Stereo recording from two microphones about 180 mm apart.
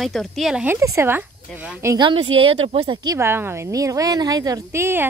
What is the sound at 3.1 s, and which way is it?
Speech, 15° right (ahead or behind).